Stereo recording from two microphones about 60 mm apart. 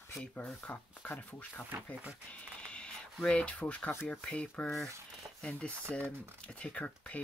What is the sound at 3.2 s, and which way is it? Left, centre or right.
Speech, centre.